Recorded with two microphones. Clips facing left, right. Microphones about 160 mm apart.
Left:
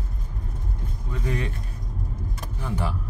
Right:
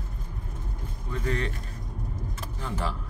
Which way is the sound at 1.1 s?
10° left (ahead or behind).